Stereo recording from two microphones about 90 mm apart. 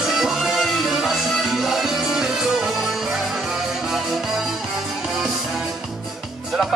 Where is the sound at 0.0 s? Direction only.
5° right (ahead or behind).